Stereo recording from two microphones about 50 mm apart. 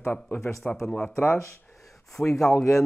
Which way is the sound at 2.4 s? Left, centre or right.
Centre.